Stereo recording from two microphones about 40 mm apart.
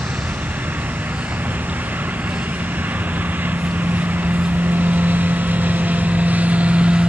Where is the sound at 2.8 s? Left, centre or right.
Right.